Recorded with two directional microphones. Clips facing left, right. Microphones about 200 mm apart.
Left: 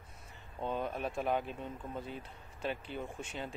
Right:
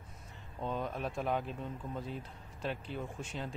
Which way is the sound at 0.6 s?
5° left (ahead or behind).